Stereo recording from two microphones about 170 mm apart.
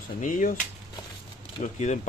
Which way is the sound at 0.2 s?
50° left (ahead or behind).